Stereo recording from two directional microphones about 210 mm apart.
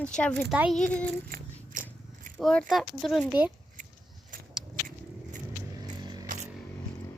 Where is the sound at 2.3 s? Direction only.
Centre (ahead or behind).